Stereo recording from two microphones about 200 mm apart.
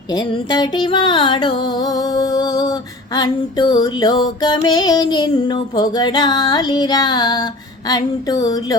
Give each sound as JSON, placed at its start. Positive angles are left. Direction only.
{"t": 0.5, "sound": "music", "side_deg": 20}